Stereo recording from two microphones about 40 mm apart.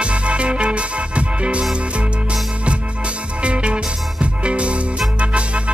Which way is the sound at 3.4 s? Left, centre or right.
Right.